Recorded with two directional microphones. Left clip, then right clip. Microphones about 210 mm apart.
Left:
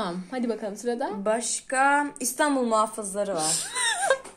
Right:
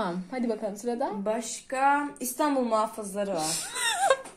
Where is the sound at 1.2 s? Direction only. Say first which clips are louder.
Left 4 dB; 45° left (ahead or behind).